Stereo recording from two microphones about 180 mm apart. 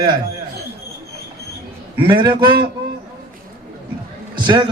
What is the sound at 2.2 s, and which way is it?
Speech, 25° right (ahead or behind).